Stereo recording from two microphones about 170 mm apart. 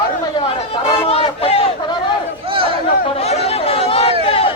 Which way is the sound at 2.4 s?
30° right (ahead or behind).